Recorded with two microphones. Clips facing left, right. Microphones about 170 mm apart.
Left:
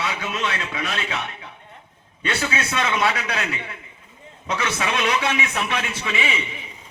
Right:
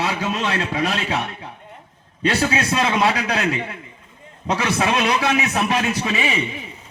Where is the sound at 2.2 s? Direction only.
35° right (ahead or behind).